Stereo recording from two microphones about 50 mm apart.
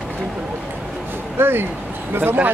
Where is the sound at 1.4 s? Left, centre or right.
Right.